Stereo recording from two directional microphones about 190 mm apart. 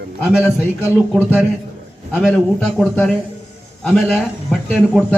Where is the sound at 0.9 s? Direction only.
10° right (ahead or behind).